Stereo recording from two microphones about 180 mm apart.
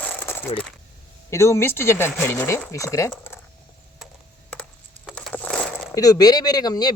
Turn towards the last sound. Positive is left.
turn(degrees=20)  # may be behind; listen again after turning